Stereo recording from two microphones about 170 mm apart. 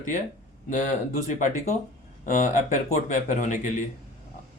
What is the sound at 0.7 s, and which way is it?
Speech, 45° left (ahead or behind).